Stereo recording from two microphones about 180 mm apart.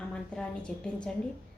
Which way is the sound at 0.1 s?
5° left (ahead or behind).